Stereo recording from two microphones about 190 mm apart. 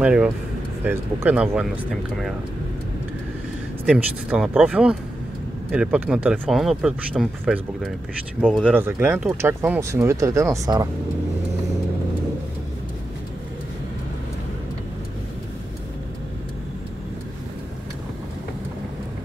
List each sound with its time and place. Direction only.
0.0 s speech: 5° right (ahead or behind)
3.8 s speech: 5° right (ahead or behind)